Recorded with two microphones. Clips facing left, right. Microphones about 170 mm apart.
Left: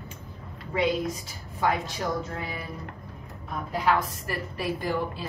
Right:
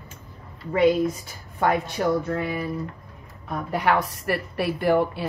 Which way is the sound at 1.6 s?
60° right (ahead or behind).